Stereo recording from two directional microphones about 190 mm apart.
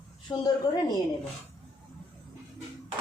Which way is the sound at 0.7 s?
20° left (ahead or behind).